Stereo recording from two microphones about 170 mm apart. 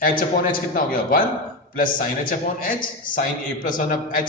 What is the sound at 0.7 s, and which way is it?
A man's voice, 55° left (ahead or behind).